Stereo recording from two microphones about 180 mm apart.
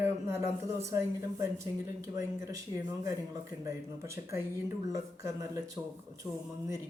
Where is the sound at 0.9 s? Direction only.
15° right (ahead or behind).